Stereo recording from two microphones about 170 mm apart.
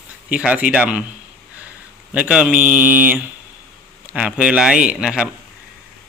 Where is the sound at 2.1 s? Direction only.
5° right (ahead or behind).